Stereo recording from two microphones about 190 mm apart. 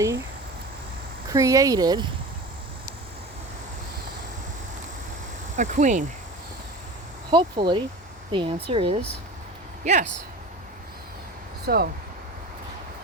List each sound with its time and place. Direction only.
1.3 s speech: 15° right (ahead or behind)
5.5 s speech: 40° right (ahead or behind)
7.3 s speech: 25° right (ahead or behind)
11.6 s speech: 55° right (ahead or behind)